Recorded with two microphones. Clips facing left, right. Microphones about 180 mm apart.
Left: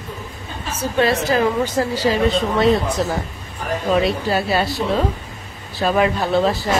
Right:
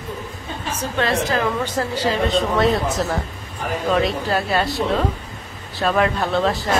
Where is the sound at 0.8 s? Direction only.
10° left (ahead or behind).